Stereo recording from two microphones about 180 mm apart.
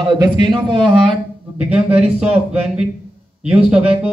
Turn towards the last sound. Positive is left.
turn(degrees=-5)  # may be behind; listen again after turning